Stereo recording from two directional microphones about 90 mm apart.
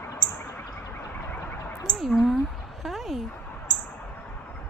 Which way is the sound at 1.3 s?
20° left (ahead or behind).